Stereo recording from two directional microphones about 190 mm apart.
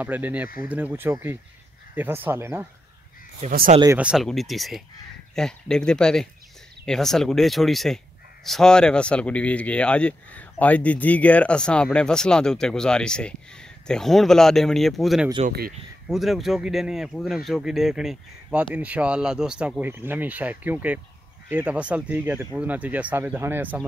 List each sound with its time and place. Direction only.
0.0 s speech: 10° right (ahead or behind)
3.4 s speech: 45° right (ahead or behind)
3.8 s speech: 10° right (ahead or behind)